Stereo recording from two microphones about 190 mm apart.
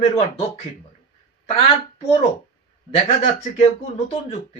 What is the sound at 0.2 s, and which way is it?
Speech, 35° left (ahead or behind).